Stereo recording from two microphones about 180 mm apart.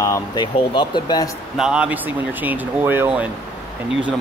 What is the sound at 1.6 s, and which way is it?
Speech, 5° right (ahead or behind).